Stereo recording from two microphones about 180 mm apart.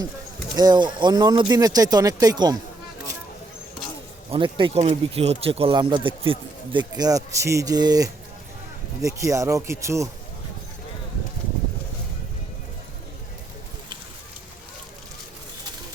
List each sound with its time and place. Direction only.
0.5 s speech: 25° right (ahead or behind)
4.3 s speech: 30° right (ahead or behind)